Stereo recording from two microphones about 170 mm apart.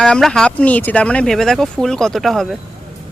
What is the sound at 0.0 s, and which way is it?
Speech, 5° left (ahead or behind).